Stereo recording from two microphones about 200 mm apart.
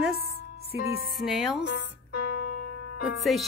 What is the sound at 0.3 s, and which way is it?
Music, 50° left (ahead or behind).